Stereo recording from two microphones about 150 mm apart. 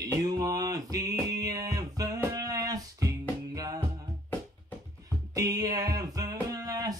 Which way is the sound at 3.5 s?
25° right (ahead or behind).